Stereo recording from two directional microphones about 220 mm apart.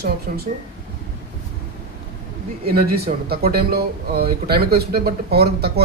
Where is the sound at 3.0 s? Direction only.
45° right (ahead or behind).